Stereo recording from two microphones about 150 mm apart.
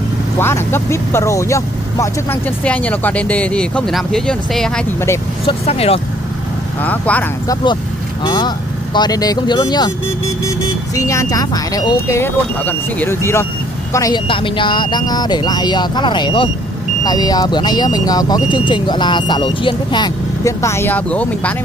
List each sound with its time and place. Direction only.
0.4 s speech: 15° left (ahead or behind)
2.6 s speech: 10° left (ahead or behind)
5.4 s speech: 40° left (ahead or behind)
6.8 s speech: 10° left (ahead or behind)
8.2 s speech: 30° left (ahead or behind)
11.0 s speech: 20° left (ahead or behind)
12.2 s speech: 15° left (ahead or behind)
14.2 s speech: 35° left (ahead or behind); by 21.5 s 10° left (ahead or behind)